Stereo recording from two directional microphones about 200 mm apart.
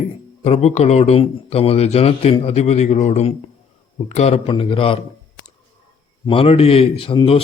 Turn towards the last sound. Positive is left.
turn(degrees=25)  # may be behind; listen again after turning